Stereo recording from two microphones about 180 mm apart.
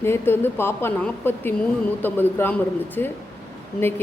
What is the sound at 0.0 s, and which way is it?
A woman's voice, 10° left (ahead or behind).